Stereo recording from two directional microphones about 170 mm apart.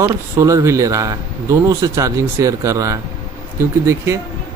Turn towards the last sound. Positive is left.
turn(degrees=-15)  # may be behind; listen again after turning